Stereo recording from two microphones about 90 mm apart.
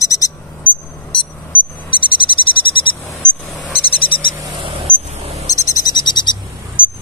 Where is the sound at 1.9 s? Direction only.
70° left (ahead or behind).